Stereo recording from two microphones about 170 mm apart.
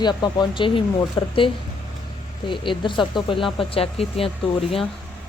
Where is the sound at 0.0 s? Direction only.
25° left (ahead or behind).